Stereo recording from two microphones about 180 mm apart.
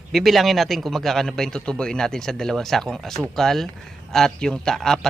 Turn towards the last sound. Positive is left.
turn(degrees=0)  # may be behind; listen again after turning